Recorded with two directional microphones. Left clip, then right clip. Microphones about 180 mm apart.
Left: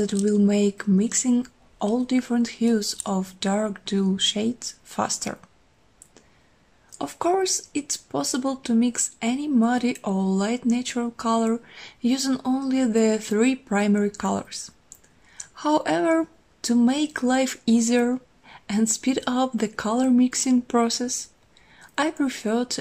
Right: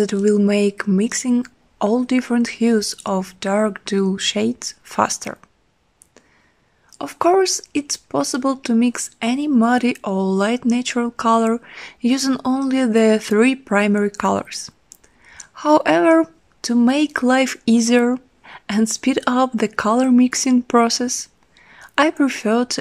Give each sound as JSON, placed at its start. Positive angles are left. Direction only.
{"t": 0.0, "sound": "speech", "side_deg": -50}
{"t": 6.9, "sound": "speech", "side_deg": -50}